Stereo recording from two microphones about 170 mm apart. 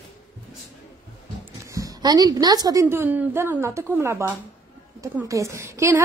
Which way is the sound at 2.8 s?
10° right (ahead or behind).